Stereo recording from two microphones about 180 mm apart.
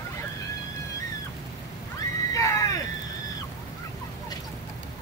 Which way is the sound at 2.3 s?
15° left (ahead or behind).